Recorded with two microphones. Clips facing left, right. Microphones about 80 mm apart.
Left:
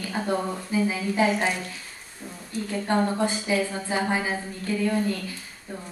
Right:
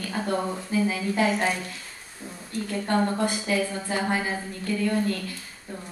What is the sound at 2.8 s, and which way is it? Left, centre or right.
A woman's voice, centre.